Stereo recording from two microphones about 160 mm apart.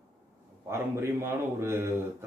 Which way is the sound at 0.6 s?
15° right (ahead or behind).